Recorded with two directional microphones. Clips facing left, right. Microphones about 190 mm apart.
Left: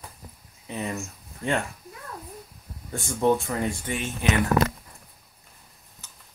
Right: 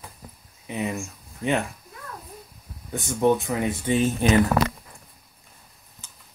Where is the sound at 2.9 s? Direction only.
15° right (ahead or behind).